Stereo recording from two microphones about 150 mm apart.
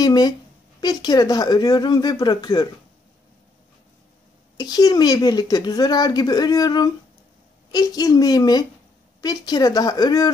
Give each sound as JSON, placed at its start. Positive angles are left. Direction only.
{"t": 0.0, "sound": "a woman's voice", "side_deg": 25}
{"t": 4.6, "sound": "a woman's voice", "side_deg": 25}